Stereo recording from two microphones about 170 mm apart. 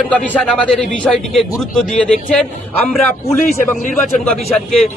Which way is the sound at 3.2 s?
40° left (ahead or behind).